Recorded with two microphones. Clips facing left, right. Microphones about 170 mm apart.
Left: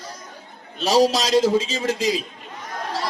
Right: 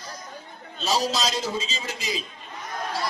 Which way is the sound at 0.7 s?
90° left.